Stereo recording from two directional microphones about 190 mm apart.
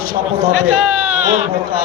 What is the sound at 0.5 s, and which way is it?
Speech, 40° right (ahead or behind).